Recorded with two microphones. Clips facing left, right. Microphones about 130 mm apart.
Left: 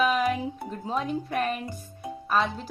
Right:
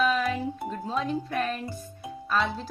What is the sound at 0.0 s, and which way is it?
Music, 15° left (ahead or behind).